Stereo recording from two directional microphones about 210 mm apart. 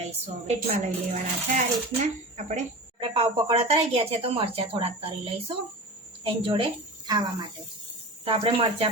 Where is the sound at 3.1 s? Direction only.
30° right (ahead or behind).